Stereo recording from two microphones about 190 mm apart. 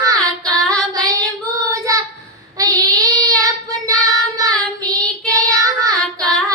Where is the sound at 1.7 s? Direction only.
15° right (ahead or behind).